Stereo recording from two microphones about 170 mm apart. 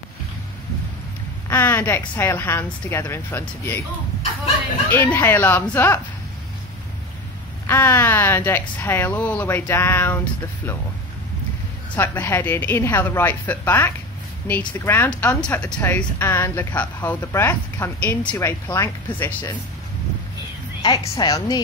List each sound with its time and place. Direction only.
1.5 s speech: 10° left (ahead or behind)
4.9 s speech: 15° left (ahead or behind)
7.6 s speech: 15° left (ahead or behind)
11.9 s speech: 15° left (ahead or behind)
20.8 s speech: 20° left (ahead or behind)